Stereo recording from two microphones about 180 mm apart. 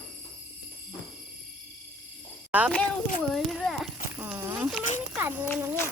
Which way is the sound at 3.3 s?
Centre (ahead or behind).